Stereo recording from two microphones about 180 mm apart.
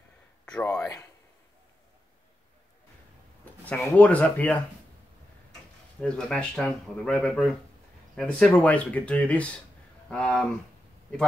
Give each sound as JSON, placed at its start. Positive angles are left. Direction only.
{"t": 0.5, "sound": "speech", "side_deg": 10}
{"t": 3.6, "sound": "speech", "side_deg": 10}
{"t": 5.9, "sound": "speech", "side_deg": 5}